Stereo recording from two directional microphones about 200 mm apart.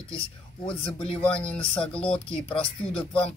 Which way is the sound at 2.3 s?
25° left (ahead or behind).